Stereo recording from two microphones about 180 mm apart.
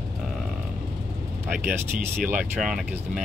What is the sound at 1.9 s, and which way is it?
Speech, 50° right (ahead or behind).